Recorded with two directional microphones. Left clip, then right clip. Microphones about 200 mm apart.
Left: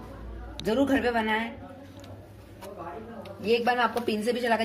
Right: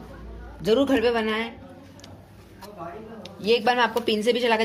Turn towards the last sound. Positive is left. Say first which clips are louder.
# right 5 dB
turn(degrees=-35)  # may be behind; listen again after turning